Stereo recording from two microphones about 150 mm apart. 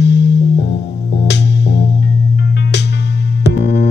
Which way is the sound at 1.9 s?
90° left.